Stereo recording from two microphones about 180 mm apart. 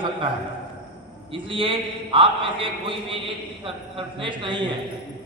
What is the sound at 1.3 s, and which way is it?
A man's voice, 30° right (ahead or behind).